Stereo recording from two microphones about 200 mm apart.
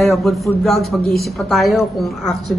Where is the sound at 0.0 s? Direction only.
Centre (ahead or behind).